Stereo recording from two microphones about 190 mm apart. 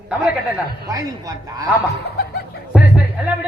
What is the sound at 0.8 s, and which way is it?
Speech, 20° right (ahead or behind).